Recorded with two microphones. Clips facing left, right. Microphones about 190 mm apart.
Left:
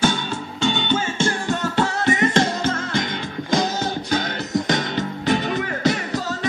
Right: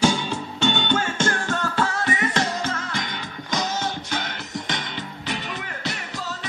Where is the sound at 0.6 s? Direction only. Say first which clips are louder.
Left 1 dB; centre (ahead or behind).